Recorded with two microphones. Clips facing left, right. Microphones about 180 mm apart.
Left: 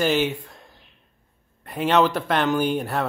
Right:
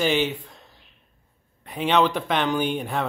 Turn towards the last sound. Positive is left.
turn(degrees=5)  # may be behind; listen again after turning